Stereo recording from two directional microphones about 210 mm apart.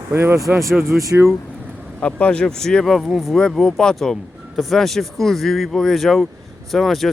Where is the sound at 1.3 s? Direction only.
Centre (ahead or behind).